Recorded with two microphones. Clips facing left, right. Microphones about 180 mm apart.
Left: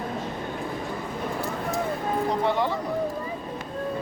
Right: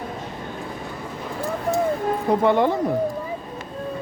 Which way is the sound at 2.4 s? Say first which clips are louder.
Right 9 dB; 55° right (ahead or behind).